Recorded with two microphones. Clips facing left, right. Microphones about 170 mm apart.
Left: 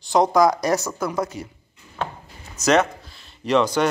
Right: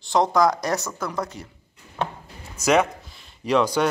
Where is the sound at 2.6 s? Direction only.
10° right (ahead or behind).